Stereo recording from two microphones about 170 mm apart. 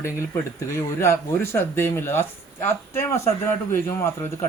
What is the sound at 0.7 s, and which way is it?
A man's voice, 15° left (ahead or behind).